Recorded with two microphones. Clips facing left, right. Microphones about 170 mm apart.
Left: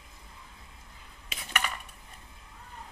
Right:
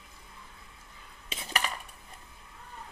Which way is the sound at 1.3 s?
30° right (ahead or behind).